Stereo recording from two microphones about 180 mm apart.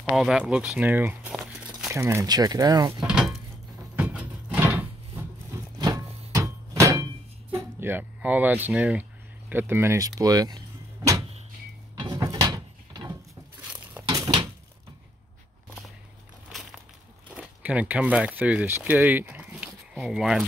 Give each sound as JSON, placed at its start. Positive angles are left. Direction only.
{"t": 0.0, "sound": "speech", "side_deg": 0}
{"t": 2.0, "sound": "speech", "side_deg": -15}
{"t": 3.0, "sound": "a sound", "side_deg": -5}
{"t": 5.8, "sound": "thunk", "side_deg": -20}
{"t": 7.5, "sound": "a sound", "side_deg": -10}
{"t": 8.6, "sound": "speech", "side_deg": -10}
{"t": 11.9, "sound": "ratchet", "side_deg": -25}
{"t": 14.0, "sound": "a sound", "side_deg": -25}
{"t": 17.4, "sound": "speech", "side_deg": -10}